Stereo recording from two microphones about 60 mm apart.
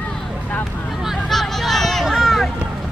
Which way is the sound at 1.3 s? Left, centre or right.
Centre.